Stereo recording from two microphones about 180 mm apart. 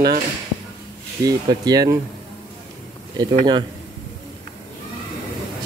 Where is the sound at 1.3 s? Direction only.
20° right (ahead or behind).